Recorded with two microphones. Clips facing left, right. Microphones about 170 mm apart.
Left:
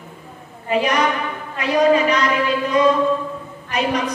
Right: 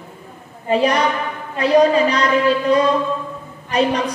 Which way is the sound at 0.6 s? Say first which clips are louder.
Right 2 dB; 35° right (ahead or behind).